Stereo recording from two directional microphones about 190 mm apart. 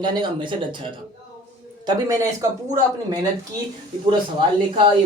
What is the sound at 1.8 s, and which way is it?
Speech, 15° right (ahead or behind).